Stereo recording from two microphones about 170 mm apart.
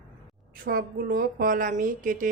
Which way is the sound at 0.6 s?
60° right (ahead or behind).